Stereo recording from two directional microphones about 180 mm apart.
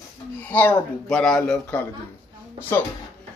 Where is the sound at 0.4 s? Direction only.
10° left (ahead or behind).